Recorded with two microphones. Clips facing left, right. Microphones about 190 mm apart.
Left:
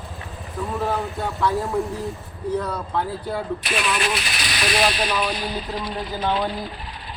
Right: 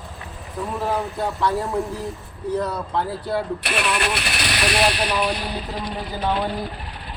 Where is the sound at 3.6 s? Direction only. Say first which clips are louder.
Right 1 dB; 60° right (ahead or behind).